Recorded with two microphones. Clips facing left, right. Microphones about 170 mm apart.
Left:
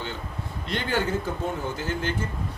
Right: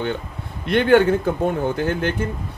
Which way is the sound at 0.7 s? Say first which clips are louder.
Right 12 dB; 60° right (ahead or behind).